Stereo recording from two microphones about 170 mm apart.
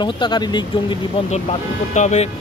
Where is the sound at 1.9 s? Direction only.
45° left (ahead or behind).